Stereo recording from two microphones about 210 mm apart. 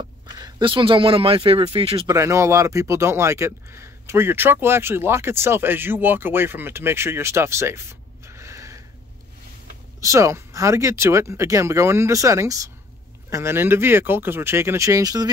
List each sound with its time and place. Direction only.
0.4 s speech: 25° right (ahead or behind)
2.1 s speech: 15° right (ahead or behind)
8.3 s snort: 15° right (ahead or behind)
9.9 s speech: 15° right (ahead or behind)